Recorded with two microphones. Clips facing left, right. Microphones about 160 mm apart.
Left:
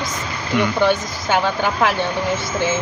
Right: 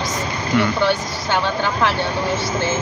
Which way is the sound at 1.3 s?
10° left (ahead or behind).